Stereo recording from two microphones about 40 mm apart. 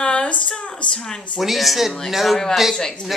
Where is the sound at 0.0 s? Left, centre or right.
Left.